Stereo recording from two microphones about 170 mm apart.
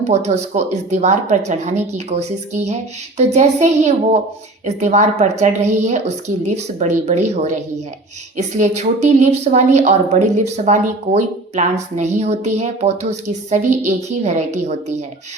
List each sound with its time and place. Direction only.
0.1 s a woman's voice: 40° right (ahead or behind)